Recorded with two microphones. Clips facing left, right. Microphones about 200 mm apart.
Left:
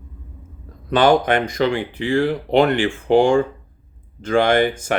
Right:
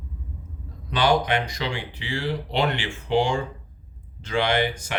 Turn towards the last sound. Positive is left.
turn(degrees=50)  # may be behind; listen again after turning